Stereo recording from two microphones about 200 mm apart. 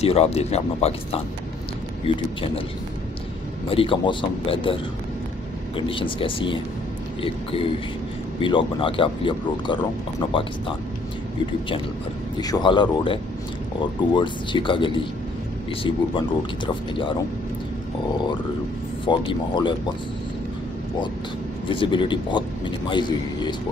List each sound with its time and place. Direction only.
0.0 s speech: 30° left (ahead or behind)
3.7 s a man's voice: 25° left (ahead or behind)
5.8 s a man's voice: 25° left (ahead or behind)
12.4 s a man's voice: 20° left (ahead or behind)
19.0 s a man's voice: 25° left (ahead or behind)
21.6 s a man's voice: 25° left (ahead or behind)